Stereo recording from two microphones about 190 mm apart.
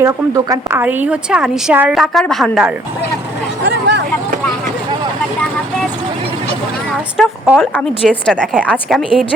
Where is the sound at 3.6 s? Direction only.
65° right (ahead or behind).